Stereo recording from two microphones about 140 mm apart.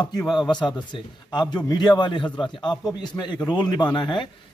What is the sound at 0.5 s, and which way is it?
A man's voice, 30° left (ahead or behind).